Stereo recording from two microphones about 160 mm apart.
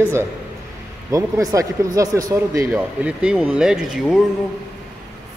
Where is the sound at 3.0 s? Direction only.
5° right (ahead or behind).